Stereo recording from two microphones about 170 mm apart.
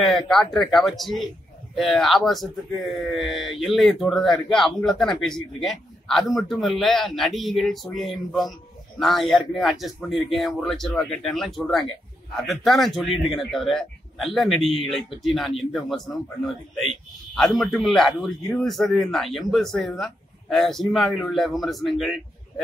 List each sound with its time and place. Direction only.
0.3 s speech: centre (ahead or behind)
17.4 s speech: centre (ahead or behind)